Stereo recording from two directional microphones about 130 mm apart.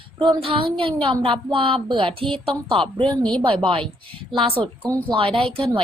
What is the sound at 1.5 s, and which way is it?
A woman's voice, 45° right (ahead or behind).